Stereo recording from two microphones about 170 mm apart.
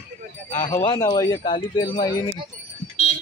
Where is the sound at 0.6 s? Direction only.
25° left (ahead or behind).